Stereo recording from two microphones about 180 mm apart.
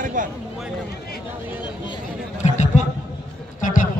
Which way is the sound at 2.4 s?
40° left (ahead or behind).